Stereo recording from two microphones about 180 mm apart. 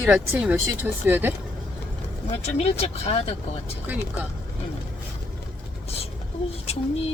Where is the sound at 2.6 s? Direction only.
35° left (ahead or behind).